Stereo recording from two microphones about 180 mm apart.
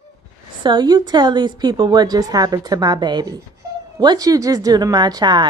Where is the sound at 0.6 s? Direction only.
25° right (ahead or behind).